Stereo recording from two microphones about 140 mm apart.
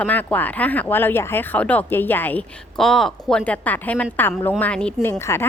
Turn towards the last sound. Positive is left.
turn(degrees=20)  # may be behind; listen again after turning